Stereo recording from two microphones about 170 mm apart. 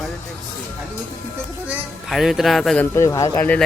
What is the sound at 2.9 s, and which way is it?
Speech, 20° left (ahead or behind).